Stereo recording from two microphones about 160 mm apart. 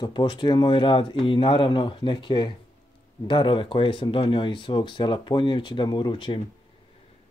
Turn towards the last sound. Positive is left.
turn(degrees=30)  # may be behind; listen again after turning